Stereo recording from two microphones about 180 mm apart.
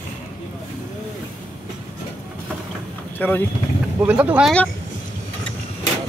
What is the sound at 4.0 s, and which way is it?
Speech, 10° right (ahead or behind).